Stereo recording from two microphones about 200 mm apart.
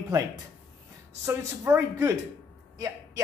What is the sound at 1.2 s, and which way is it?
Speech, 15° right (ahead or behind).